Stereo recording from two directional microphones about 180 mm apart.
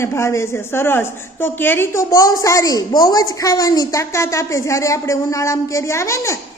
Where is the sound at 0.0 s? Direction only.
15° left (ahead or behind).